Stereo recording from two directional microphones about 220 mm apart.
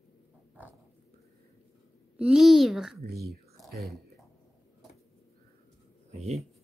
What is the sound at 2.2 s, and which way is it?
Speech, 5° right (ahead or behind).